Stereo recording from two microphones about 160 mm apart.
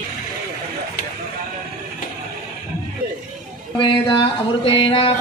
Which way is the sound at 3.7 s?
30° left (ahead or behind).